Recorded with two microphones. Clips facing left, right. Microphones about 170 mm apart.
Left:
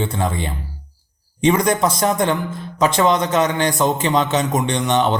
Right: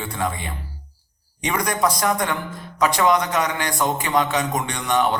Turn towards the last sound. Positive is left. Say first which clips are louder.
# left 3 dB
turn(degrees=25)  # may be behind; listen again after turning